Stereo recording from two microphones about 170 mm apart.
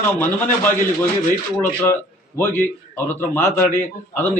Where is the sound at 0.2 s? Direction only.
10° left (ahead or behind).